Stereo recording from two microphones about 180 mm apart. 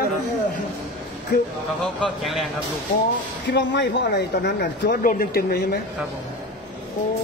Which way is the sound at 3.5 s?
75° left (ahead or behind).